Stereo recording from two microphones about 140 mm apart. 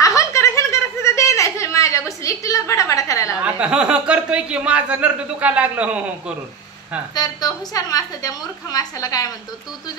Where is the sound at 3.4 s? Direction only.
10° right (ahead or behind).